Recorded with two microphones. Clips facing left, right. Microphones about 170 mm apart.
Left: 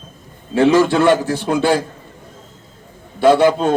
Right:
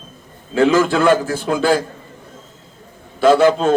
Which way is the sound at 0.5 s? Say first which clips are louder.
Left 1 dB; 25° left (ahead or behind).